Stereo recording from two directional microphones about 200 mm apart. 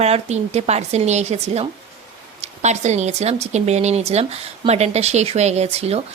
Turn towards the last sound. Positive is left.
turn(degrees=-30)  # may be behind; listen again after turning